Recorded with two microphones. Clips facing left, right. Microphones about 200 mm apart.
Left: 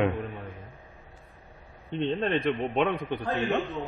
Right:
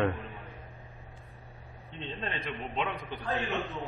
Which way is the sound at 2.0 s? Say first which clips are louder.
Left 11 dB; 60° left (ahead or behind).